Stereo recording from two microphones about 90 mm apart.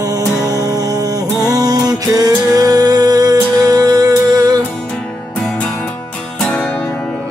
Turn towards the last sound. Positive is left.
turn(degrees=10)  # may be behind; listen again after turning